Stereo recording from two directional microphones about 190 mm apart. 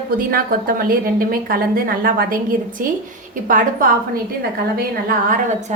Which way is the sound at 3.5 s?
45° right (ahead or behind).